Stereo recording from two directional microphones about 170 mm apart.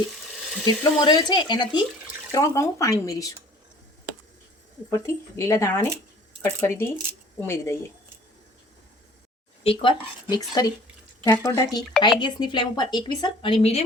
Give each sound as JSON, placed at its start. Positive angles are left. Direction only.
{"t": 0.6, "sound": "a woman's voice", "side_deg": 25}
{"t": 4.9, "sound": "speech", "side_deg": 15}
{"t": 9.6, "sound": "a woman's voice", "side_deg": 30}